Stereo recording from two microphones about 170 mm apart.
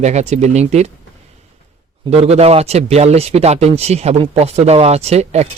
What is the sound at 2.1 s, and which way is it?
A man's voice, 40° right (ahead or behind).